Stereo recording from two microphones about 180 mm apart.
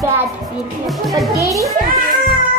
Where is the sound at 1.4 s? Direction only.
15° right (ahead or behind).